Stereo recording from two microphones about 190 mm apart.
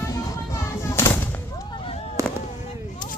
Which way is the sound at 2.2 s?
15° right (ahead or behind).